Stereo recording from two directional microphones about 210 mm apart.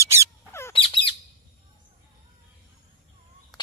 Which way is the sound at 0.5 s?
10° left (ahead or behind).